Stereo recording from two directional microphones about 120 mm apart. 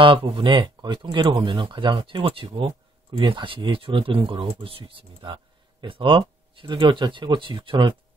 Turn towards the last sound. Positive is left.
turn(degrees=-40)  # may be behind; listen again after turning